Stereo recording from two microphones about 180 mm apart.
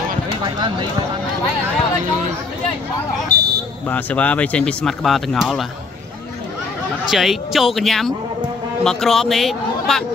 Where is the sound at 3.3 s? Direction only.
60° right (ahead or behind).